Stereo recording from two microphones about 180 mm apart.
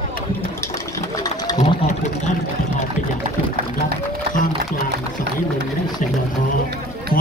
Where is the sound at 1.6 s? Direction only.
40° left (ahead or behind).